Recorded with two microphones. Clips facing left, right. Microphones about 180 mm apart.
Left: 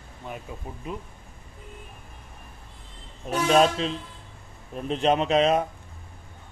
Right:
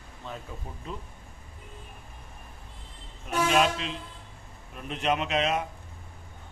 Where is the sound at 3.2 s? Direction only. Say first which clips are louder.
Left 4 dB; 35° left (ahead or behind).